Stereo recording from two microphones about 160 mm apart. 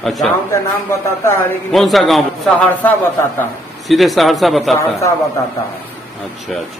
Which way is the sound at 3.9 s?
Centre (ahead or behind).